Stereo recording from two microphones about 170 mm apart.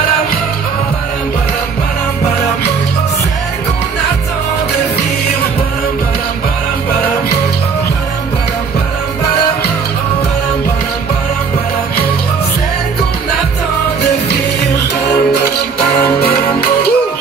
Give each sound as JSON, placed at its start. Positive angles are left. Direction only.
{"t": 15.0, "sound": "music", "side_deg": 75}